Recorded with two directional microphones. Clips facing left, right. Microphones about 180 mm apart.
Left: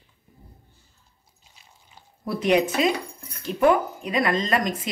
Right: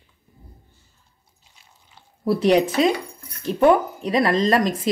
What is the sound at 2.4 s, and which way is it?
A woman's voice, 35° right (ahead or behind).